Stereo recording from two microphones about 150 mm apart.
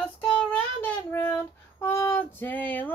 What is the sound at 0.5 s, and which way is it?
Child singing, 10° left (ahead or behind).